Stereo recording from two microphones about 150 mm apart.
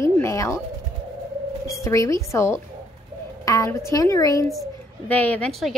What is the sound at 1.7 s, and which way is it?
A woman's voice, 20° left (ahead or behind).